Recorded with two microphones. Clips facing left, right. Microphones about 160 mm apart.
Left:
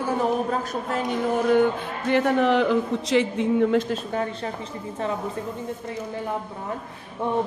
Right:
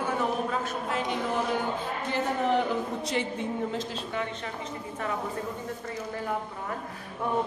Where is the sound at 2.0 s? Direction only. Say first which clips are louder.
Left 8 dB; 70° left (ahead or behind).